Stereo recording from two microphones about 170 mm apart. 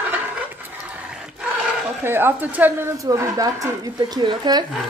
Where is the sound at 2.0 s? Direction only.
15° right (ahead or behind).